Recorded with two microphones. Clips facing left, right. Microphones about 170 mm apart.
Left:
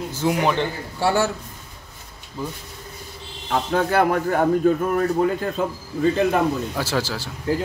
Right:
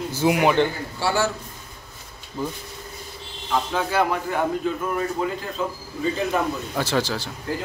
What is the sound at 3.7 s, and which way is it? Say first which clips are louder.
Speech: left 5 dB; 50° left (ahead or behind).